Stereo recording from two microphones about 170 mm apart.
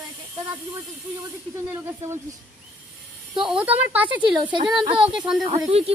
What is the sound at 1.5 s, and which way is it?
Speech, 15° right (ahead or behind).